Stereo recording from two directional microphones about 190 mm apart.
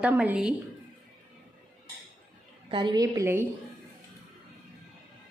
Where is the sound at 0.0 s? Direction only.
5° right (ahead or behind).